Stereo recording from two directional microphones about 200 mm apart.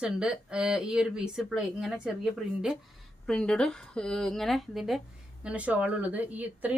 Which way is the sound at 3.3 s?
5° left (ahead or behind).